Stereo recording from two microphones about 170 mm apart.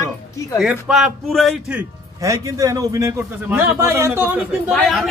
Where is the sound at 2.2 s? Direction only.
20° right (ahead or behind).